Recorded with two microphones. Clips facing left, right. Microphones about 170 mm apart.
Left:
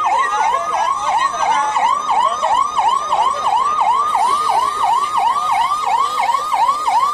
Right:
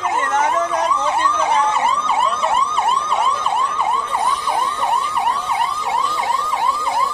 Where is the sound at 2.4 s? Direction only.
60° left (ahead or behind).